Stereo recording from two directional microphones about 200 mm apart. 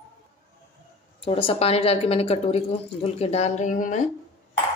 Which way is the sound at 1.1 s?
30° left (ahead or behind).